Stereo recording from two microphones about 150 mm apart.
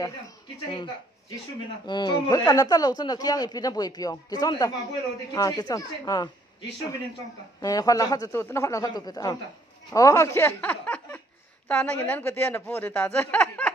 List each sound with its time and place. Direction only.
1.9 s speech: 30° left (ahead or behind)
7.6 s a woman's voice: 25° left (ahead or behind)